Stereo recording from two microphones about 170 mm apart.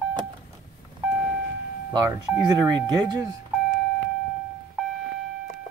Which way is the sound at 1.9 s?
20° right (ahead or behind).